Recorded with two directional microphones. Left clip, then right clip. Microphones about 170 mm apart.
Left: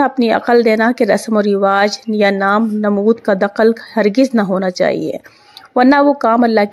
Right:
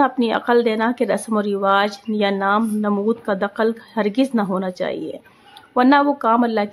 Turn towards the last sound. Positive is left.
turn(degrees=30)  # may be behind; listen again after turning